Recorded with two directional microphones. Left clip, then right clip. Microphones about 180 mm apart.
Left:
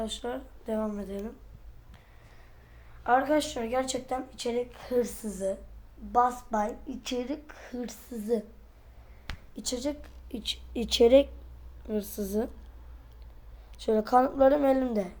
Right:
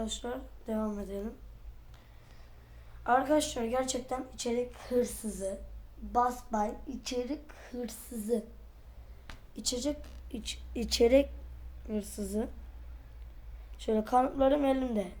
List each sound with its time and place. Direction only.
0.0 s speech: 35° left (ahead or behind)
3.0 s speech: 35° left (ahead or behind)
9.2 s a sound: 35° left (ahead or behind)
10.3 s a woman's voice: 25° left (ahead or behind)
13.8 s a woman's voice: 25° left (ahead or behind)